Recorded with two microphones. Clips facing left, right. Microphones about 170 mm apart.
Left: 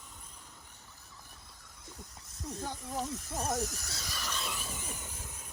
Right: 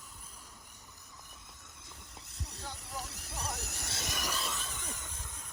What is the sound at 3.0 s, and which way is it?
Speech, 70° right (ahead or behind).